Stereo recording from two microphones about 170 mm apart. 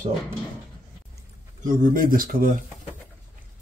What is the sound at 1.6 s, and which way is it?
Speech, 55° right (ahead or behind).